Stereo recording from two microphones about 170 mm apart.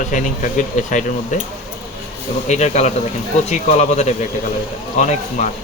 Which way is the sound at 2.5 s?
40° left (ahead or behind).